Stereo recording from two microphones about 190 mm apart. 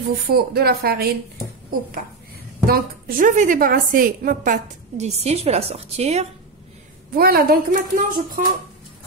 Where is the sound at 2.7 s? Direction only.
50° right (ahead or behind); by 6.3 s 35° right (ahead or behind).